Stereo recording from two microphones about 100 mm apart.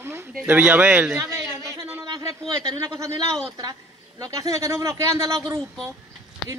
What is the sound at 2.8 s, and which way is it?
Speech, 30° right (ahead or behind).